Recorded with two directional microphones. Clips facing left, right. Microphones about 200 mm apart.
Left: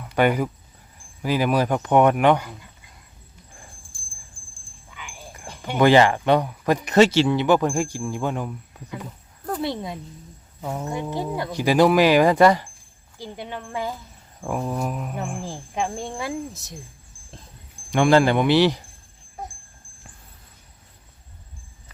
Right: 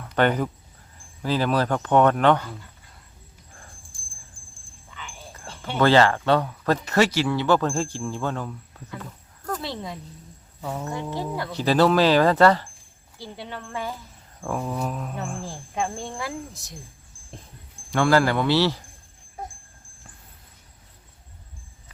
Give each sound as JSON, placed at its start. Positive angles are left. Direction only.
{"t": 0.0, "sound": "speech", "side_deg": 10}
{"t": 4.9, "sound": "speech", "side_deg": 10}
{"t": 17.9, "sound": "speech", "side_deg": 15}